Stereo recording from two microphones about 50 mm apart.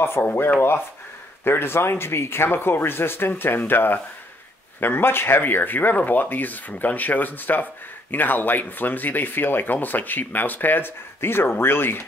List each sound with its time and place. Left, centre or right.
0.2 s speech: left